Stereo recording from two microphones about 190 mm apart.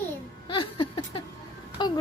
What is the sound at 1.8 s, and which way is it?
Speech, 25° left (ahead or behind).